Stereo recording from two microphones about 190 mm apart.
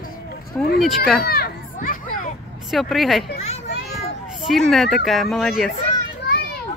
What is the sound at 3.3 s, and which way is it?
Children playing, 35° left (ahead or behind).